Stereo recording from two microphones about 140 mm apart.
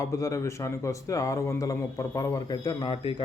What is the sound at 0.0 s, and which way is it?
A man's voice, 25° left (ahead or behind).